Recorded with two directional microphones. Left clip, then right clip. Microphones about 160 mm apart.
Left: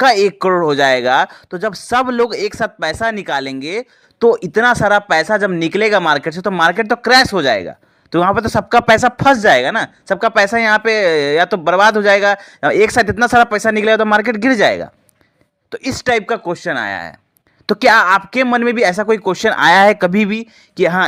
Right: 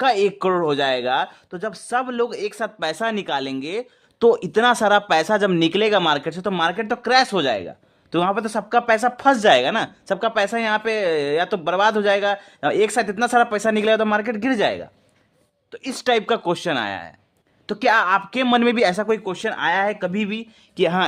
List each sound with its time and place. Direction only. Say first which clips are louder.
0.0 s speech: left 7 dB; 20° left (ahead or behind)
9.3 s speech: left 3 dB; 15° left (ahead or behind)
16.0 s speech: left 3 dB; 10° left (ahead or behind)
17.7 s speech: left 7 dB; 25° left (ahead or behind)
18.4 s speech: left 4 dB; 10° left (ahead or behind)
19.0 s speech: left 8 dB; 30° left (ahead or behind)
20.4 s speech: left 6 dB; 20° left (ahead or behind)